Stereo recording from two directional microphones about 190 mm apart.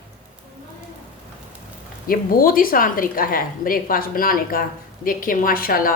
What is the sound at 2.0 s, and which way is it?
A woman's voice, 50° left (ahead or behind).